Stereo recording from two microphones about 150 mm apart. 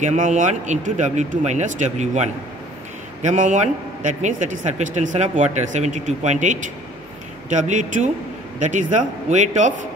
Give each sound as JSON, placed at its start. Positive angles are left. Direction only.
{"t": 0.0, "sound": "a man's voice", "side_deg": -55}